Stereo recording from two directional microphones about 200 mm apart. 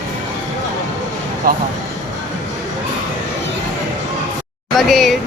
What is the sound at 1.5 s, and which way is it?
Speech, 45° right (ahead or behind).